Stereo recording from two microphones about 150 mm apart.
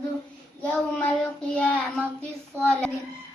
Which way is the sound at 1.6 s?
10° left (ahead or behind).